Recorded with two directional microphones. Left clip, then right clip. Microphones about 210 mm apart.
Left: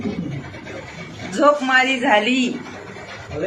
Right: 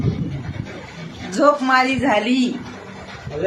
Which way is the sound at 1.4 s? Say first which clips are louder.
Even; 10° right (ahead or behind).